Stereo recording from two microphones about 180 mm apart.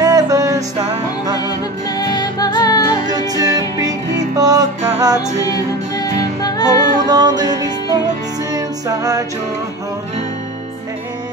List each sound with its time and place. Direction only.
0.0 s music: 20° right (ahead or behind)
1.9 s music: 20° left (ahead or behind)
3.1 s music: 20° right (ahead or behind)
5.9 s music: 20° left (ahead or behind)
6.6 s music: 20° right (ahead or behind)